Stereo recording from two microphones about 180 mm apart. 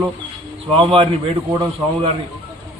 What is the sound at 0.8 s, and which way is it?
A man's voice, 30° right (ahead or behind).